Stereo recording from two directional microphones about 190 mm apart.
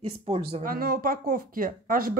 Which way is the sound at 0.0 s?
30° right (ahead or behind).